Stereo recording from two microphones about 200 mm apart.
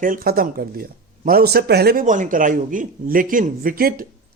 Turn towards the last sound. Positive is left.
turn(degrees=-45)  # may be behind; listen again after turning